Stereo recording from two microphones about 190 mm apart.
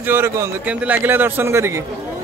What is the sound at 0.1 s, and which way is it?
A man's voice, 10° right (ahead or behind).